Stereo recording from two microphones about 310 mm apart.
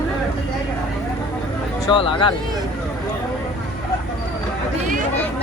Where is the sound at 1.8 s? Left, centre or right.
Centre.